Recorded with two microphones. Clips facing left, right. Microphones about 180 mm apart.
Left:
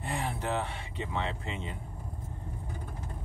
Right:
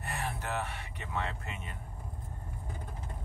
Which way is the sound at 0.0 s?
20° left (ahead or behind).